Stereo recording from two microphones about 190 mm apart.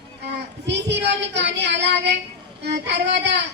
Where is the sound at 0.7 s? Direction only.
65° right (ahead or behind).